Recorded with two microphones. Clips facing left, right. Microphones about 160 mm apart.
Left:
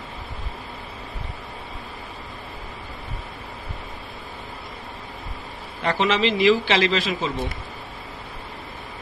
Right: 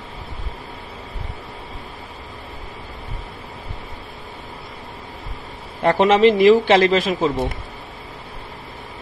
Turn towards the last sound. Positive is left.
turn(degrees=-50)  # may be behind; listen again after turning